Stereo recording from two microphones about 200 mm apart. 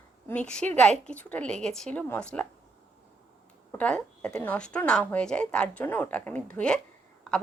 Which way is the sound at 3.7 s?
5° left (ahead or behind).